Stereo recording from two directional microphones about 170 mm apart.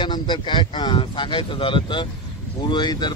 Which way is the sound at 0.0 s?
25° left (ahead or behind).